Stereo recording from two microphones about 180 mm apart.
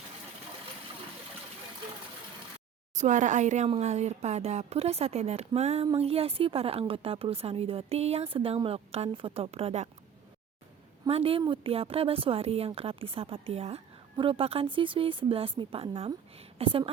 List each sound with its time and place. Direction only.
2.9 s speech: 40° right (ahead or behind)
11.0 s speech: 30° right (ahead or behind)